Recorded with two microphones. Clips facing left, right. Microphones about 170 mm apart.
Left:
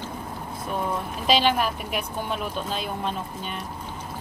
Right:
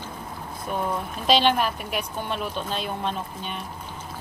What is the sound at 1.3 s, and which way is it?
Speech, 5° left (ahead or behind).